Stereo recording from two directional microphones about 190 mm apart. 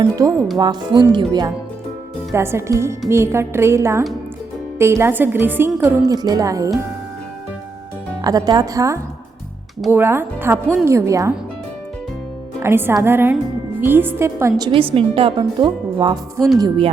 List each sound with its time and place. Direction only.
0.0 s a woman's voice: 20° right (ahead or behind)
8.2 s a woman's voice: 20° right (ahead or behind)
12.5 s a woman's voice: 10° right (ahead or behind)
14.6 s a woman's voice: 30° right (ahead or behind)